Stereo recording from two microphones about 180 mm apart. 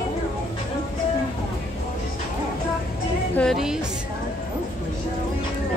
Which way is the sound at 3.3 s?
Centre (ahead or behind).